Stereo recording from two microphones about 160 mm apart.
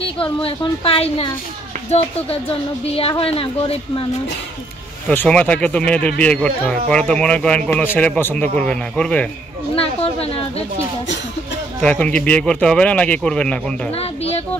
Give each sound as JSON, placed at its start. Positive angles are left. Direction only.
{"t": 0.0, "sound": "a woman's voice", "side_deg": 35}
{"t": 5.1, "sound": "speech", "side_deg": 10}
{"t": 9.8, "sound": "a sound", "side_deg": 35}
{"t": 11.8, "sound": "speech", "side_deg": 5}
{"t": 13.9, "sound": "a woman's voice", "side_deg": 40}